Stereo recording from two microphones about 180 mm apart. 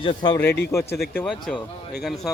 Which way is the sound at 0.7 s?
15° left (ahead or behind).